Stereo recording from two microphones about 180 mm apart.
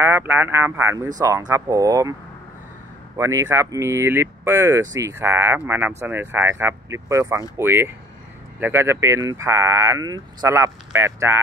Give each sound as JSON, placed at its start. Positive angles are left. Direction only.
{"t": 0.0, "sound": "speech", "side_deg": -10}
{"t": 3.2, "sound": "speech", "side_deg": -15}